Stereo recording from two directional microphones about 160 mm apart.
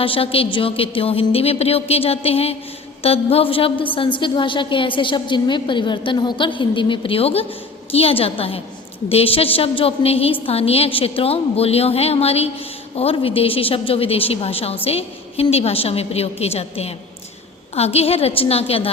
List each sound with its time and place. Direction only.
0.0 s a woman's voice: 35° left (ahead or behind)